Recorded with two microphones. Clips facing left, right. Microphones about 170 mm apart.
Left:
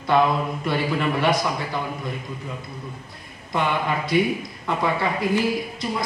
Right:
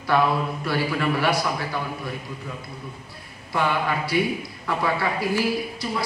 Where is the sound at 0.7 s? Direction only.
20° left (ahead or behind).